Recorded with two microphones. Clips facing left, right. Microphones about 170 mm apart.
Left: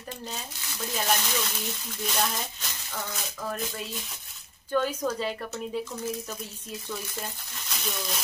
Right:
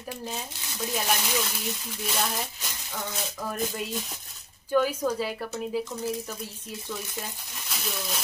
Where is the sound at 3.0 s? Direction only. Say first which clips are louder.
Right 2 dB; 20° right (ahead or behind).